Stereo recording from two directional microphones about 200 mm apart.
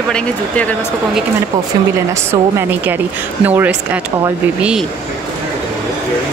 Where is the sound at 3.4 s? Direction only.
10° right (ahead or behind).